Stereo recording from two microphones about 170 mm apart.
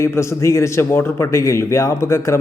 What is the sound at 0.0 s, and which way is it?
A man's voice, 15° left (ahead or behind).